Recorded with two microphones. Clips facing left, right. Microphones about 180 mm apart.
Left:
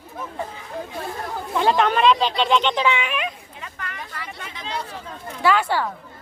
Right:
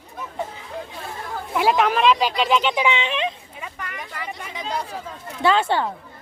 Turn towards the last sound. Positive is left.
turn(degrees=-25)  # may be behind; listen again after turning